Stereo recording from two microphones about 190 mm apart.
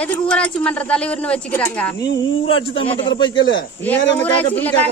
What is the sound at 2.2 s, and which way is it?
A man's voice, 30° left (ahead or behind).